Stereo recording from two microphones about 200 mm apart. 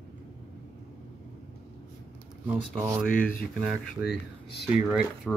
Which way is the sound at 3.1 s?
45° left (ahead or behind).